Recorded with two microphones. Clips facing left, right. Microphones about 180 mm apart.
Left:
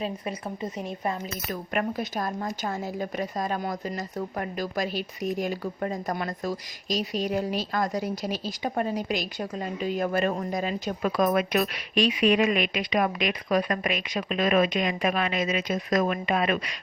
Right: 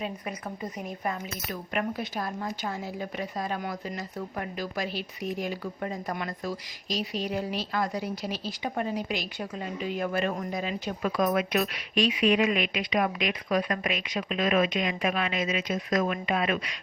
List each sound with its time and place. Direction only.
0.0 s a woman's voice: 30° left (ahead or behind)
1.5 s speech: 45° left (ahead or behind)